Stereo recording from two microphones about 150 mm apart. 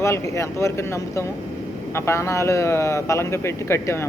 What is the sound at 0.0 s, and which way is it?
Speech, 20° left (ahead or behind).